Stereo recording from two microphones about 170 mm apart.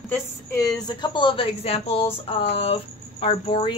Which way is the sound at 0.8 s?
25° left (ahead or behind).